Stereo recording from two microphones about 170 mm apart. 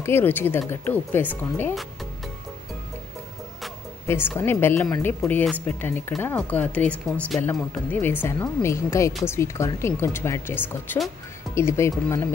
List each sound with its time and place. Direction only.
0.0 s speech: 15° left (ahead or behind)
4.1 s speech: 15° left (ahead or behind)